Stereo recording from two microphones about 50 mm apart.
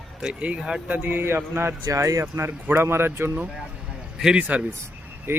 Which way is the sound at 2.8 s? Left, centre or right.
Right.